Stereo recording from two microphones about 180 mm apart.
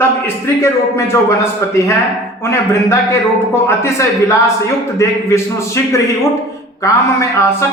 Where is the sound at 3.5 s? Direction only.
15° left (ahead or behind).